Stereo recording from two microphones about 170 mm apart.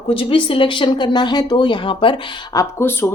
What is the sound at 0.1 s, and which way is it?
Speech, 30° left (ahead or behind).